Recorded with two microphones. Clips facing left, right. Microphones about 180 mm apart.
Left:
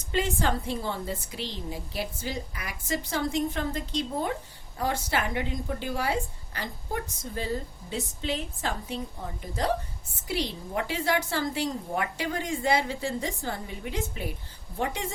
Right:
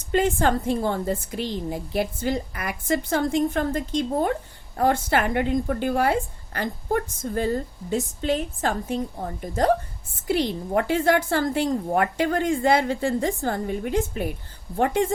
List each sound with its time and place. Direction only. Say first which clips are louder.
0.1 s a woman's voice: right 7 dB; 50° right (ahead or behind)